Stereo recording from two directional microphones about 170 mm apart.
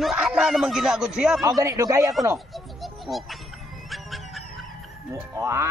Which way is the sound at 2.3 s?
Centre (ahead or behind).